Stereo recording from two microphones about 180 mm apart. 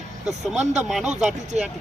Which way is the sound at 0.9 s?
Centre (ahead or behind).